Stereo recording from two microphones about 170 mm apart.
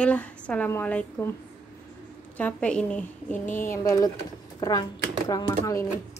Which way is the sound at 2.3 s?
10° left (ahead or behind).